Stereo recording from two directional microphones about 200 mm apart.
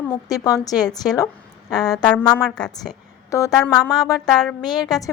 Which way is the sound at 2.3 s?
5° left (ahead or behind).